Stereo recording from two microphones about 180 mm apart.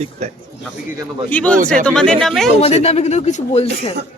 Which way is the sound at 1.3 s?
5° left (ahead or behind).